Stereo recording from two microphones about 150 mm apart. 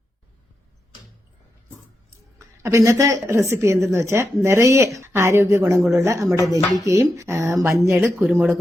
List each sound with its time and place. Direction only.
2.4 s a woman's voice: 20° right (ahead or behind)